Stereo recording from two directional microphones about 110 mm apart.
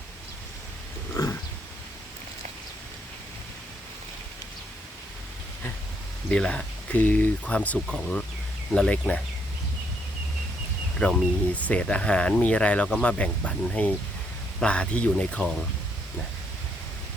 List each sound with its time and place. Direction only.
1.1 s pig: 25° left (ahead or behind)
6.3 s speech: 5° left (ahead or behind)
11.0 s speech: 10° left (ahead or behind)